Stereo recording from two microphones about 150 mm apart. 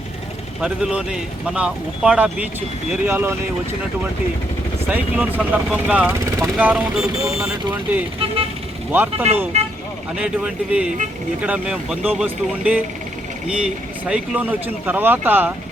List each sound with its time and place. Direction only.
0.6 s speech: 5° right (ahead or behind)
4.9 s speech: 10° right (ahead or behind)